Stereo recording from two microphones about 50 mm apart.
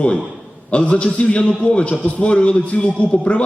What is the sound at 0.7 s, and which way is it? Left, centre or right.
A man's voice, left.